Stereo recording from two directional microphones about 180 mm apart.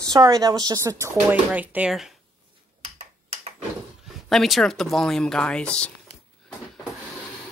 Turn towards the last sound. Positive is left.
turn(degrees=5)  # may be behind; listen again after turning